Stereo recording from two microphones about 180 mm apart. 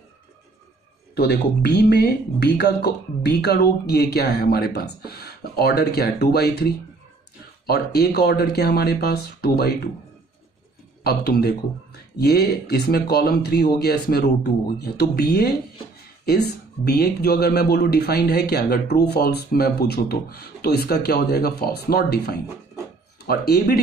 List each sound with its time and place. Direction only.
1.1 s speech: 60° left (ahead or behind)
11.1 s speech: 65° left (ahead or behind)